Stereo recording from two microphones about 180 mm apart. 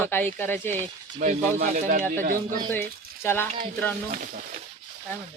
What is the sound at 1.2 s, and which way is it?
Speech, 45° right (ahead or behind).